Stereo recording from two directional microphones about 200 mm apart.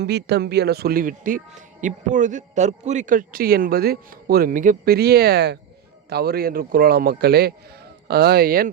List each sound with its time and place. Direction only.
0.0 s a man's voice: 55° right (ahead or behind)